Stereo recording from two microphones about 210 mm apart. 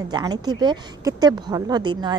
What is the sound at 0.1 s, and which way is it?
Speech, 20° right (ahead or behind).